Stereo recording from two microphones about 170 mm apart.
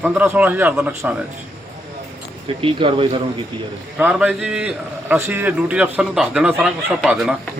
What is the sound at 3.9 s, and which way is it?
A man's voice, 10° right (ahead or behind).